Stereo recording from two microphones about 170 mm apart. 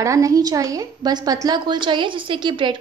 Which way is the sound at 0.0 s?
20° right (ahead or behind).